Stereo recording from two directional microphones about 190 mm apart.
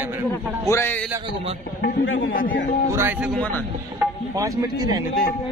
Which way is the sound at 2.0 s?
90° left.